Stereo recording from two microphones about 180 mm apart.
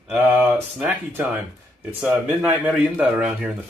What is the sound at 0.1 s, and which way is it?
Speech, 5° right (ahead or behind).